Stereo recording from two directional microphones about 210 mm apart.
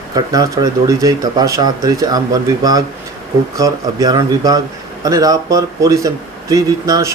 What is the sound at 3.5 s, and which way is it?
Speech, 15° right (ahead or behind).